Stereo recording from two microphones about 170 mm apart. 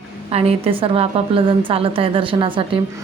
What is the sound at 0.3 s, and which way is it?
A woman's voice, 35° right (ahead or behind).